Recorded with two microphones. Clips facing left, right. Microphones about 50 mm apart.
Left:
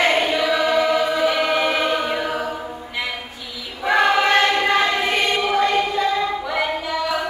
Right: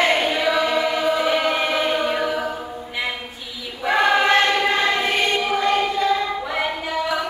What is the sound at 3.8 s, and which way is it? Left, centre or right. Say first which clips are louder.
Choir: left 1 dB; centre.